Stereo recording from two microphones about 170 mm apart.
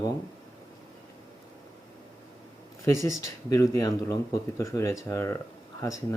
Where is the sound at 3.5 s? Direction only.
20° left (ahead or behind).